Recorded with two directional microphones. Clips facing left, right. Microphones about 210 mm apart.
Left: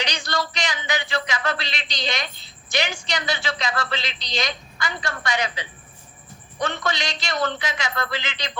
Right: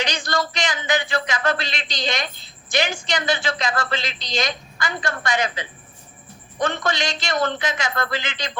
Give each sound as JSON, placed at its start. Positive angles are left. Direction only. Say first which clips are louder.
{"t": 0.0, "sound": "a man's voice", "louder": "right 3 dB", "side_deg": -50}